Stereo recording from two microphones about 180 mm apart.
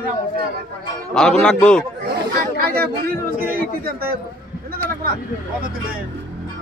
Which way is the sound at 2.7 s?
55° right (ahead or behind).